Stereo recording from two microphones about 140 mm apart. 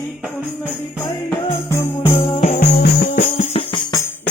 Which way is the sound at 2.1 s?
35° left (ahead or behind).